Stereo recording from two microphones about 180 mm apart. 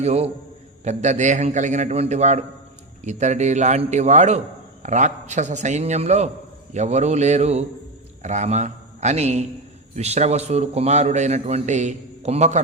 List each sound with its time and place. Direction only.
0.0 s a man's voice: 35° right (ahead or behind)